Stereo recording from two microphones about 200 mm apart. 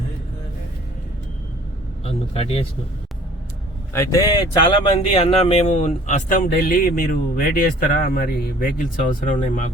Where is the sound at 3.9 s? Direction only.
15° left (ahead or behind).